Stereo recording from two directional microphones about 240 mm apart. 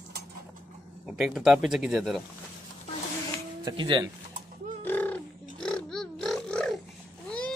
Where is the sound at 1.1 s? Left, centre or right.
Centre.